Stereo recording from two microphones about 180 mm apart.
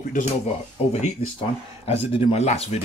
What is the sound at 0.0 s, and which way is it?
Speech, 45° left (ahead or behind).